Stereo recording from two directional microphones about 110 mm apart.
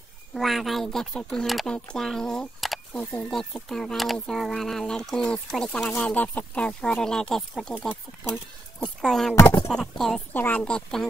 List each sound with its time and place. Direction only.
0.3 s speech: centre (ahead or behind)
3.0 s speech: 15° left (ahead or behind)
3.3 s speech: 5° left (ahead or behind)
9.3 s speech: 25° left (ahead or behind)
9.7 s speech: 5° left (ahead or behind)
10.3 s speech: 15° left (ahead or behind)